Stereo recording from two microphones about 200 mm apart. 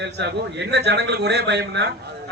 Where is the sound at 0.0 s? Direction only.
60° right (ahead or behind).